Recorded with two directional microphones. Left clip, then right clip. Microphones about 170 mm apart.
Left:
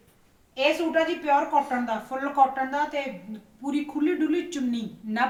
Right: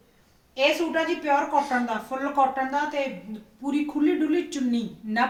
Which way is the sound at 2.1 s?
20° right (ahead or behind).